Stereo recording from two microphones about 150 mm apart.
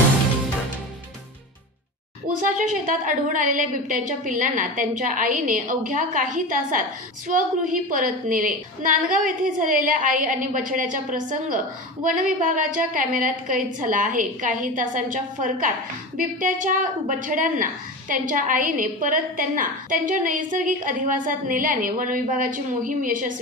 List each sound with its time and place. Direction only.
2.2 s a woman's voice: 65° right (ahead or behind)